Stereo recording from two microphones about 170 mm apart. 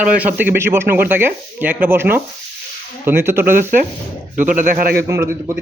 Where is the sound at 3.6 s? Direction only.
50° right (ahead or behind).